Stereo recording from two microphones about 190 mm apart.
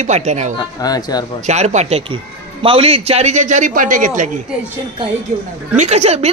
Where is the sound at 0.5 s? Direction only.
20° left (ahead or behind).